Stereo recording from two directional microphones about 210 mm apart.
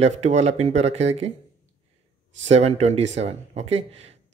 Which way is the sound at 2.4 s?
30° right (ahead or behind).